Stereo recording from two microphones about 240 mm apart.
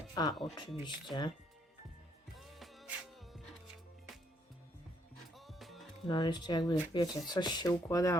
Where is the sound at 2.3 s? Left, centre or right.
Centre.